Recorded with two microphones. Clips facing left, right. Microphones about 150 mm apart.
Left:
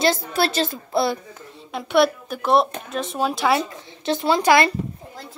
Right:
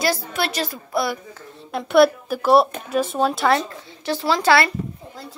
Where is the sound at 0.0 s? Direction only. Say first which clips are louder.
Left 3 dB; 25° left (ahead or behind).